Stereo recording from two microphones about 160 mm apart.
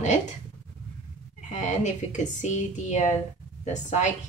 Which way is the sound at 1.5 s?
50° left (ahead or behind).